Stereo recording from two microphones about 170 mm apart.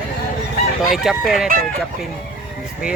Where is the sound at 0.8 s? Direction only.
Centre (ahead or behind).